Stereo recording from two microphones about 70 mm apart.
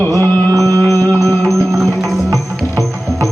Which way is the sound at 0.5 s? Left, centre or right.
Right.